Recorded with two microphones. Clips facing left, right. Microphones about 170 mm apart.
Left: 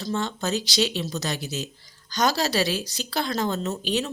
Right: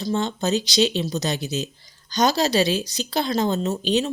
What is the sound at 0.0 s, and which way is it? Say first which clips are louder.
Speech: right 4 dB; 20° right (ahead or behind).